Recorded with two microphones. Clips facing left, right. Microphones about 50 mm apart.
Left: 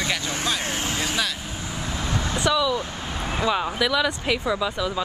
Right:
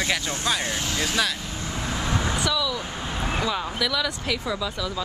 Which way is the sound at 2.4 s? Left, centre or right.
Left.